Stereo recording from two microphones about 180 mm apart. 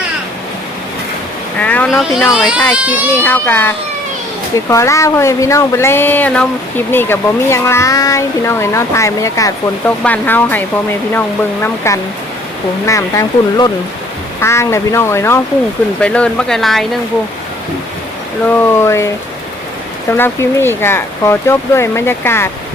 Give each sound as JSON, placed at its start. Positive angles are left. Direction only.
{"t": 1.5, "sound": "speech", "side_deg": 10}
{"t": 3.1, "sound": "speech", "side_deg": 10}
{"t": 11.6, "sound": "speech", "side_deg": 15}
{"t": 18.4, "sound": "speech", "side_deg": 10}